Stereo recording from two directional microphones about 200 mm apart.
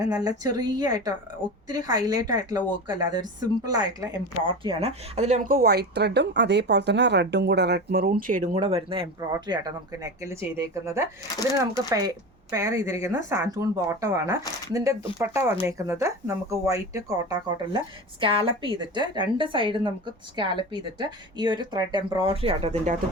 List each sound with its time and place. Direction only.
0.0 s speech: 20° right (ahead or behind); by 8.4 s 45° right (ahead or behind)
8.5 s speech: 30° right (ahead or behind)